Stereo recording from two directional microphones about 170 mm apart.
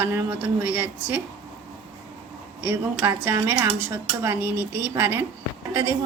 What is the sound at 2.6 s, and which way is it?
Speech, 10° right (ahead or behind).